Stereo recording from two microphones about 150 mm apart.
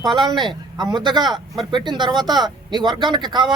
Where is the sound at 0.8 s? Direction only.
30° right (ahead or behind).